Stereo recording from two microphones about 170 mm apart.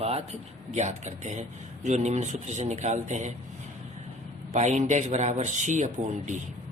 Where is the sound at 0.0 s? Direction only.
35° right (ahead or behind).